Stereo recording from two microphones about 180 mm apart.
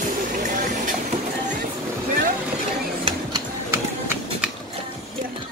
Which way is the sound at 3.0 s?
25° right (ahead or behind).